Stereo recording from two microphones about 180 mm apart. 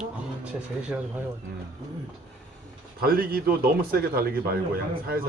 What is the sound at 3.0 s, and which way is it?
A man's voice, 55° right (ahead or behind).